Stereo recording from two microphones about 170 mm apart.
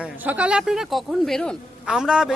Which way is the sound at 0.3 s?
5° right (ahead or behind).